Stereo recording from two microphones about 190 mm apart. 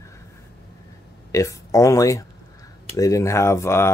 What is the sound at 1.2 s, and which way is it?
Speech, 15° left (ahead or behind).